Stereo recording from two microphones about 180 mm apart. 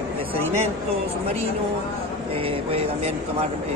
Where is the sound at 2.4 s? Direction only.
35° right (ahead or behind).